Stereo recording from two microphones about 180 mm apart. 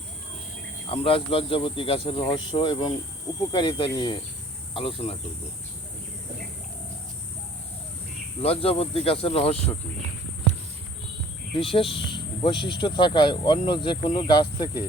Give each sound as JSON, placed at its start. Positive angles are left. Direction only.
{"t": 0.9, "sound": "speech", "side_deg": 30}
{"t": 8.4, "sound": "speech", "side_deg": 35}
{"t": 11.5, "sound": "speech", "side_deg": 30}